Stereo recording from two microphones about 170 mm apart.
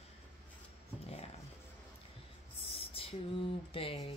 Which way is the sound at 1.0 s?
35° left (ahead or behind).